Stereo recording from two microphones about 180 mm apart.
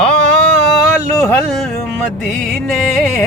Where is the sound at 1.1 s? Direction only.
15° left (ahead or behind).